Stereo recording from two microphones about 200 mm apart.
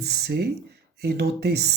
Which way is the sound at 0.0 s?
55° right (ahead or behind).